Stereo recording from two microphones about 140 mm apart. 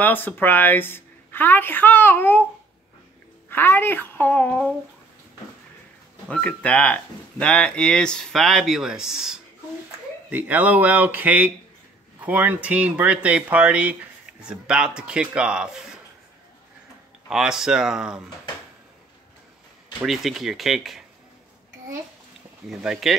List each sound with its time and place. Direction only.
0.0 s a woman's voice: 15° left (ahead or behind)
3.4 s a woman's voice: 15° left (ahead or behind)
6.3 s speech: 10° left (ahead or behind)
17.3 s speech: 5° right (ahead or behind)
20.1 s speech: centre (ahead or behind)
22.7 s speech: 5° right (ahead or behind)